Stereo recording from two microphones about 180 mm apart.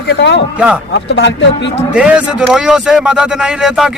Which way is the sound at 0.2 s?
75° left (ahead or behind).